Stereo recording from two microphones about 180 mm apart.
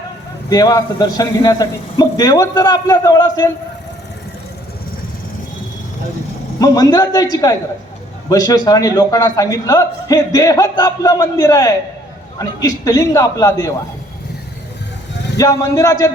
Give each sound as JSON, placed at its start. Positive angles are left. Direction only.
{"t": 0.5, "sound": "a man's voice", "side_deg": 20}
{"t": 6.6, "sound": "a man's voice", "side_deg": 20}
{"t": 15.4, "sound": "a man's voice", "side_deg": 20}